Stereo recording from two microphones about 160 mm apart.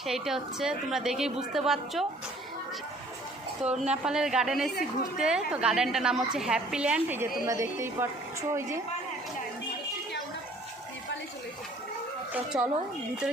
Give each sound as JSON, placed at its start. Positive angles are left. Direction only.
{"t": 0.0, "sound": "a woman's voice", "side_deg": 0}
{"t": 3.6, "sound": "a woman's voice", "side_deg": -5}
{"t": 12.3, "sound": "a woman's voice", "side_deg": -5}